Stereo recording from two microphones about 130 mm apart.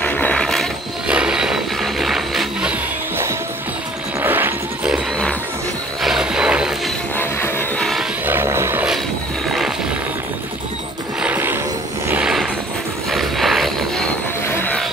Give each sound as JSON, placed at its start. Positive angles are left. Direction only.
{"t": 0.0, "sound": "a sound", "side_deg": 10}
{"t": 1.0, "sound": "a sound", "side_deg": -5}
{"t": 4.2, "sound": "music", "side_deg": -15}
{"t": 7.2, "sound": "music", "side_deg": 15}
{"t": 7.8, "sound": "vehicle", "side_deg": 0}
{"t": 8.3, "sound": "vehicle", "side_deg": -20}
{"t": 11.1, "sound": "music", "side_deg": -15}
{"t": 12.1, "sound": "vehicle", "side_deg": -5}
{"t": 13.1, "sound": "a sound", "side_deg": 0}
{"t": 14.5, "sound": "vehicle", "side_deg": 15}